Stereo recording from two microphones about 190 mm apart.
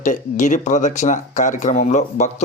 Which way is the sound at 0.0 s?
40° left (ahead or behind).